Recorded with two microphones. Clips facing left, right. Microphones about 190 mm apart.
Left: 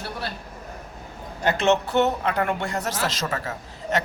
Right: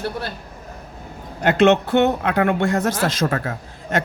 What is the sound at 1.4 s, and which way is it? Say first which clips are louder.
Speech: right 6 dB; 60° right (ahead or behind).